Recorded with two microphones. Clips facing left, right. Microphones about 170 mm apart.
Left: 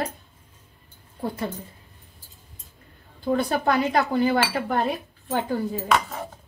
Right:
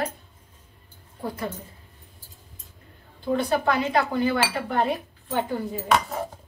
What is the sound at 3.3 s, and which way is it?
Speech, 35° left (ahead or behind).